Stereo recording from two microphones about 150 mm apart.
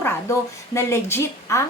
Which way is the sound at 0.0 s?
20° left (ahead or behind).